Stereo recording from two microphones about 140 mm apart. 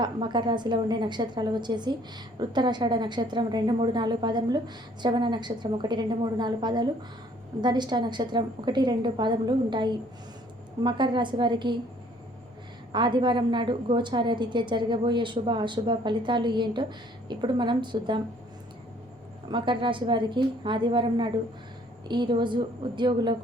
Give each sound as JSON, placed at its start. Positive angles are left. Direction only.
{"t": 0.0, "sound": "a woman's voice", "side_deg": -35}
{"t": 12.9, "sound": "a woman's voice", "side_deg": -35}
{"t": 19.5, "sound": "a woman's voice", "side_deg": -35}